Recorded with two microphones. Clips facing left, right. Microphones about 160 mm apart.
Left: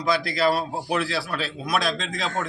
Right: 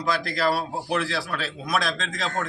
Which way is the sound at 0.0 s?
5° left (ahead or behind).